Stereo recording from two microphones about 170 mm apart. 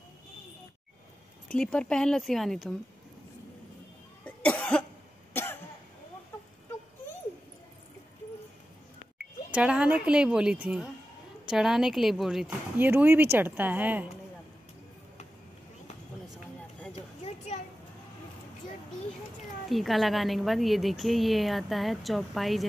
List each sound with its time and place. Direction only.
1.5 s a woman's voice: 5° left (ahead or behind)
4.2 s cough: 10° left (ahead or behind)
9.5 s a woman's voice: 5° right (ahead or behind)
16.9 s a sound: 40° left (ahead or behind)
19.7 s a woman's voice: centre (ahead or behind)